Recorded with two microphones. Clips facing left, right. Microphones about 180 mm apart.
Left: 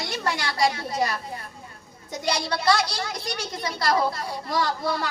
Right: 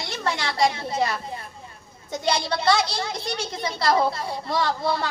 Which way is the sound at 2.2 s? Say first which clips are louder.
Right 2 dB; 25° right (ahead or behind).